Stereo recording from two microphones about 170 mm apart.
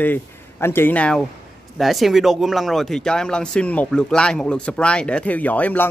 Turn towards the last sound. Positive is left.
turn(degrees=10)  # may be behind; listen again after turning